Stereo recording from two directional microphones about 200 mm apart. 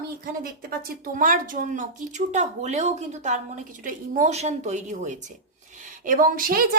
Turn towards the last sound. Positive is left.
turn(degrees=-45)  # may be behind; listen again after turning